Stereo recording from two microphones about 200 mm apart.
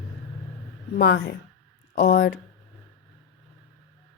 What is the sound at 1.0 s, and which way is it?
Speech, 50° left (ahead or behind).